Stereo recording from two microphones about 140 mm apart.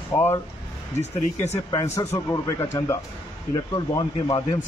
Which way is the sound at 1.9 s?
20° left (ahead or behind).